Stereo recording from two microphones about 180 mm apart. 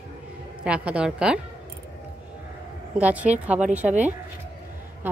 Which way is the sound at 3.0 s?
10° right (ahead or behind).